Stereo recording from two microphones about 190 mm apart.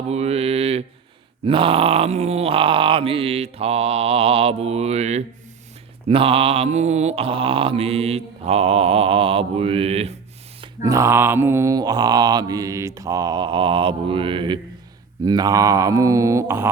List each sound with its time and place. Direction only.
0.1 s mantra: 35° right (ahead or behind)
10.8 s mantra: 15° right (ahead or behind)
15.2 s speech: 20° right (ahead or behind)